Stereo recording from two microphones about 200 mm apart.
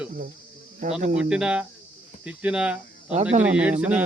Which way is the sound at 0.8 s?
40° right (ahead or behind).